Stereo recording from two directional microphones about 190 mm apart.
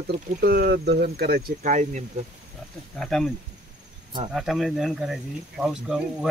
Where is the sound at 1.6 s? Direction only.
40° right (ahead or behind).